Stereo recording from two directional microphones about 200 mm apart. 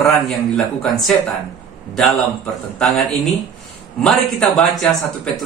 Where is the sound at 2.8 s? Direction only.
Centre (ahead or behind).